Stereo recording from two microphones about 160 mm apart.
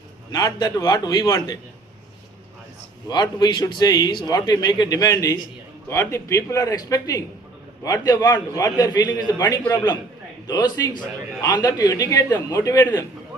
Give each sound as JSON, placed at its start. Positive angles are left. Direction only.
{"t": 0.3, "sound": "a man's voice", "side_deg": 25}
{"t": 3.1, "sound": "a man's voice", "side_deg": 25}